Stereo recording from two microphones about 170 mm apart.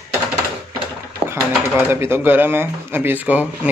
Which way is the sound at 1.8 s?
15° right (ahead or behind).